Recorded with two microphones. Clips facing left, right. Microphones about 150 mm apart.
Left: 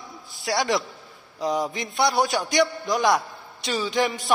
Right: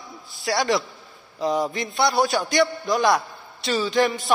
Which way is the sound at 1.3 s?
10° left (ahead or behind).